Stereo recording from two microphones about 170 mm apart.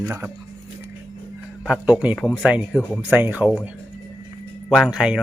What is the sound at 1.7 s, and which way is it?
Speech, 5° right (ahead or behind).